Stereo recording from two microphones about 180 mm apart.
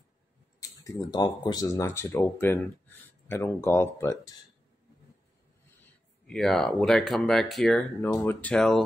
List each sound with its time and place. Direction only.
0.6 s speech: 20° left (ahead or behind)
6.2 s speech: 5° left (ahead or behind)